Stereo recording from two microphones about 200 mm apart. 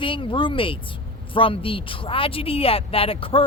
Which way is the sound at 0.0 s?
25° left (ahead or behind).